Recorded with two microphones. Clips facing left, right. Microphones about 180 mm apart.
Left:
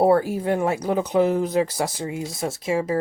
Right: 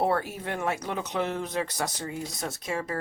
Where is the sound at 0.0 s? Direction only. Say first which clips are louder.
Left 9 dB; 35° left (ahead or behind).